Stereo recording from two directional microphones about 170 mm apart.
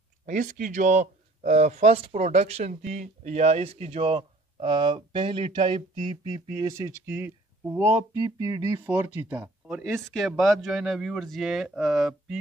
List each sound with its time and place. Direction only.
0.3 s speech: 50° right (ahead or behind)
6.6 s speech: 20° right (ahead or behind); by 12.4 s 5° right (ahead or behind)